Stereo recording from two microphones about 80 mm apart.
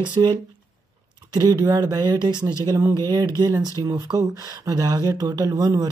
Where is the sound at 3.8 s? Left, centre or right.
Right.